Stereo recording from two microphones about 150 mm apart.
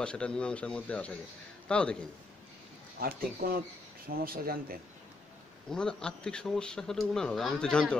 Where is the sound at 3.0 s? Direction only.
80° right.